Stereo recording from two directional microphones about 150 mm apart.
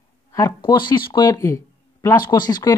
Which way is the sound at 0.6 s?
30° left (ahead or behind).